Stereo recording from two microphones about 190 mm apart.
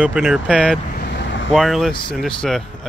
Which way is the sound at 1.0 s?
60° left (ahead or behind).